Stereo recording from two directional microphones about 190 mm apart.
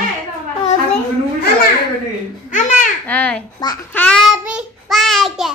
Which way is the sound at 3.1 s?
5° left (ahead or behind).